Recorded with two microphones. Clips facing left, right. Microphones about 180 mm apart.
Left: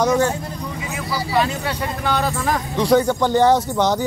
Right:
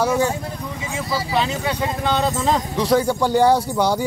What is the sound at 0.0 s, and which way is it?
Speech, 10° right (ahead or behind).